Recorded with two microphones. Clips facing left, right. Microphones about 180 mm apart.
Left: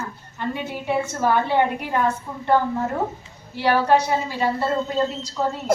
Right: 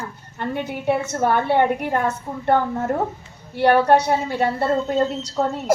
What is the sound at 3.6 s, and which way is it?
A woman's voice, 55° right (ahead or behind).